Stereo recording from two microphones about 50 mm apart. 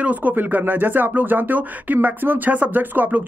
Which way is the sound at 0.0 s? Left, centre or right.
Right.